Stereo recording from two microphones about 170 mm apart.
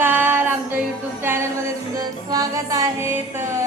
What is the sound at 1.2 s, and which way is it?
Music, 15° right (ahead or behind).